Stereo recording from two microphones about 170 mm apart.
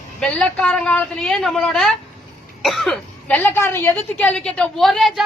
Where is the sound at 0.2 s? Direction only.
5° left (ahead or behind).